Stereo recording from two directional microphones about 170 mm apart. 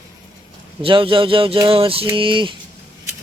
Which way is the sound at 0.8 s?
30° right (ahead or behind).